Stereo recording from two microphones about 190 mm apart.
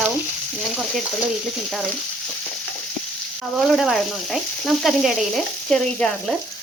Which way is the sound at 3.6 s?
Centre (ahead or behind).